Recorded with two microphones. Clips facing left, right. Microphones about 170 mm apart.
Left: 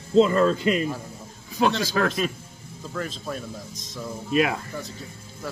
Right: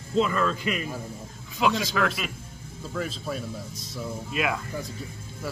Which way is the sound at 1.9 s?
40° left (ahead or behind).